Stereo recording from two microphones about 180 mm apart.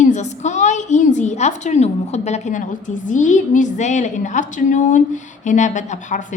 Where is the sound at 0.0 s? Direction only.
40° left (ahead or behind).